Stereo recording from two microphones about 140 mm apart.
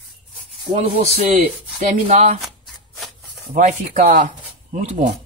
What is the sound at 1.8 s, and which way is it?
Rub, 60° right (ahead or behind).